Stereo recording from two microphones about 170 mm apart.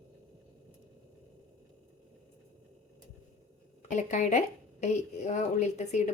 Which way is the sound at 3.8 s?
45° left (ahead or behind).